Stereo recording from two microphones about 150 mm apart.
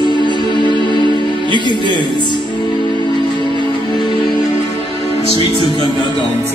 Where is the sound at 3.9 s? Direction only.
30° left (ahead or behind).